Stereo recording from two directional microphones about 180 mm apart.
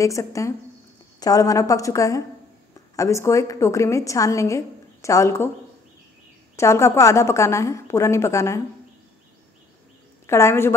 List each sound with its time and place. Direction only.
0.0 s a woman's voice: 15° left (ahead or behind)
6.5 s a woman's voice: 15° left (ahead or behind)
10.2 s a woman's voice: 15° left (ahead or behind)